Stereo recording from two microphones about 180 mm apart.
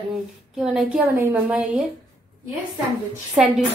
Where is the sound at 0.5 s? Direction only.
5° right (ahead or behind).